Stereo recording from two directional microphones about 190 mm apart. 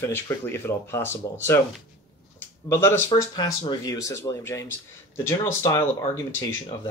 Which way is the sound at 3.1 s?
20° left (ahead or behind).